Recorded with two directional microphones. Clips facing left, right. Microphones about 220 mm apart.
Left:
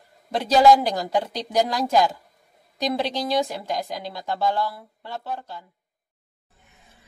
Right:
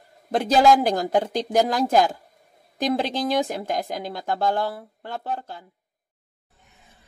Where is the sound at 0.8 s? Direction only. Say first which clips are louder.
Right 3 dB; 50° right (ahead or behind).